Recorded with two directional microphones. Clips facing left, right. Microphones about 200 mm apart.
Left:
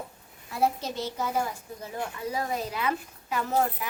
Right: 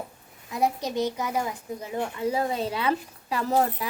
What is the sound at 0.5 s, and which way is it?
A woman's voice, 15° right (ahead or behind).